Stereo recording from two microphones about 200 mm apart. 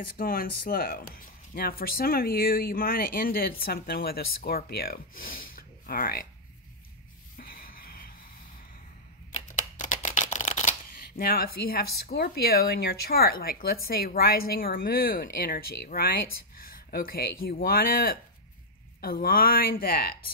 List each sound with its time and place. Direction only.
0.1 s speech: 45° left (ahead or behind)
7.3 s a sound: 50° left (ahead or behind)
9.3 s shuffling cards: 40° left (ahead or behind)
18.9 s speech: 45° left (ahead or behind)